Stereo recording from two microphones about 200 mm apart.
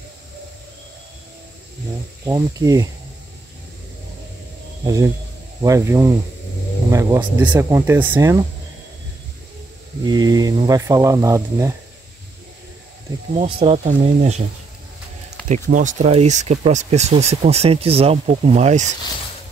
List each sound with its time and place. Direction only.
2.2 s speech: 15° right (ahead or behind)
4.8 s speech: 15° right (ahead or behind)
10.0 s speech: 20° right (ahead or behind)
13.3 s speech: 30° right (ahead or behind)
15.4 s speech: 40° right (ahead or behind)